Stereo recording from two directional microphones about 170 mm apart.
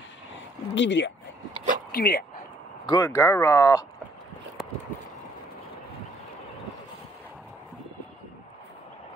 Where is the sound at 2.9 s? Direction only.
20° left (ahead or behind).